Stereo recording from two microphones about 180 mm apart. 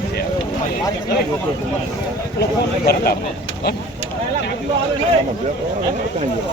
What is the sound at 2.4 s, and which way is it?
Speech, 60° left (ahead or behind).